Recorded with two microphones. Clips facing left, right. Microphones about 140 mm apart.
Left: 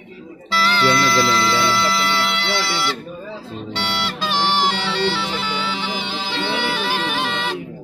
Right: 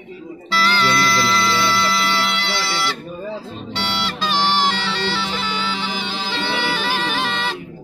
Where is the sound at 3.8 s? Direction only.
5° left (ahead or behind).